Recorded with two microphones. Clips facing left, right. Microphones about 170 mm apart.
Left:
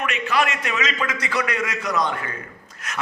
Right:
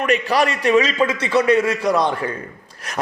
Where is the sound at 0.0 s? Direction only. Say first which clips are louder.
Right 5 dB; 35° right (ahead or behind).